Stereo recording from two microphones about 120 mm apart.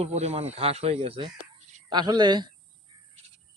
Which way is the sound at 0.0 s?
65° right (ahead or behind).